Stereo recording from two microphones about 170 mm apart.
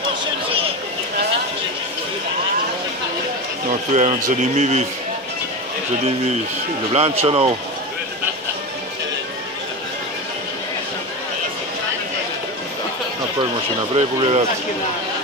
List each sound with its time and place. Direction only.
3.9 s a man's voice: 40° right (ahead or behind)
6.9 s speech: 35° right (ahead or behind)
14.1 s speech: 30° right (ahead or behind)